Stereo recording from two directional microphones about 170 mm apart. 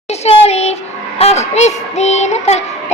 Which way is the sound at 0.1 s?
40° left (ahead or behind).